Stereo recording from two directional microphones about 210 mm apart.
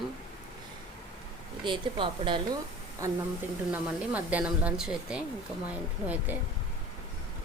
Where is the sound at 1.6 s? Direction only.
25° right (ahead or behind).